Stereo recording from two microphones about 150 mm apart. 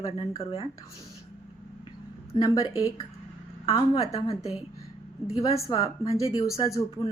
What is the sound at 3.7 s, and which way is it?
Speech, 40° left (ahead or behind).